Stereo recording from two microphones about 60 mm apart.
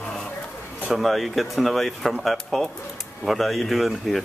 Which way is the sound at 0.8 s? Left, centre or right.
Centre.